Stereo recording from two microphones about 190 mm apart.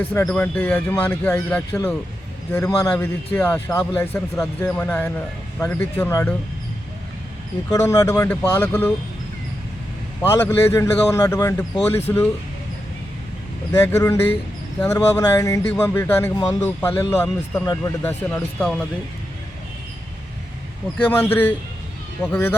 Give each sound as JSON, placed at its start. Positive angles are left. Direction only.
{"t": 0.1, "sound": "a man's voice", "side_deg": 10}
{"t": 7.7, "sound": "a man's voice", "side_deg": 15}
{"t": 10.2, "sound": "a man's voice", "side_deg": 15}
{"t": 13.8, "sound": "a man's voice", "side_deg": 15}
{"t": 21.1, "sound": "a man's voice", "side_deg": 10}